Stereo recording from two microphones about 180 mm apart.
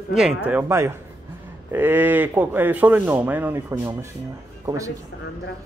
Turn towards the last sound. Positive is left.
turn(degrees=-15)  # may be behind; listen again after turning